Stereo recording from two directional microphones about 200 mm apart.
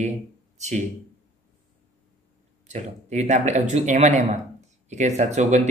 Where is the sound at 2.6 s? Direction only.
35° right (ahead or behind).